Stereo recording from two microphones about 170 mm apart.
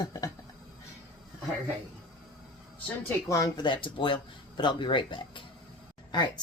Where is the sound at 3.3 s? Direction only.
20° left (ahead or behind).